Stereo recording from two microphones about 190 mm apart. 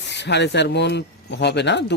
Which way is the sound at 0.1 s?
65° left (ahead or behind).